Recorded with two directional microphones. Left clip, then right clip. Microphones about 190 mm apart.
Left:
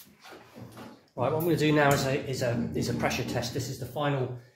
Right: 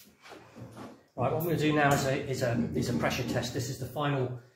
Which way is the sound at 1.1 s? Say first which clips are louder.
Left 3 dB; 55° left (ahead or behind).